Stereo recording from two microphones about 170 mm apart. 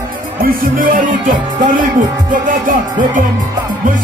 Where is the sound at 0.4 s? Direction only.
55° right (ahead or behind).